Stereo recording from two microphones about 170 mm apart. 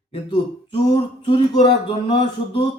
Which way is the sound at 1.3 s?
30° left (ahead or behind).